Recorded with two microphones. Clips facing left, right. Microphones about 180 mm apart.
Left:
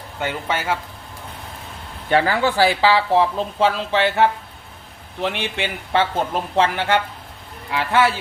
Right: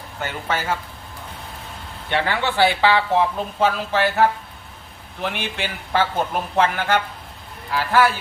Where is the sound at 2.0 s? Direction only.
40° left (ahead or behind).